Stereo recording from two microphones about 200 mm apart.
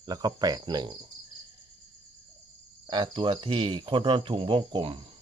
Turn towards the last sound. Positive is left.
turn(degrees=-25)  # may be behind; listen again after turning